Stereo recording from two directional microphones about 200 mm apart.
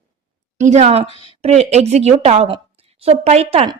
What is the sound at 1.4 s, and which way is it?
A woman's voice, 30° right (ahead or behind).